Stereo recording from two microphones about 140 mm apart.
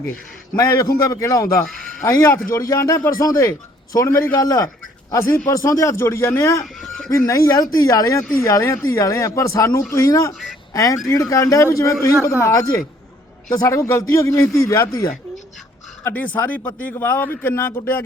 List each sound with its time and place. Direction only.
0.5 s a man's voice: 25° left (ahead or behind)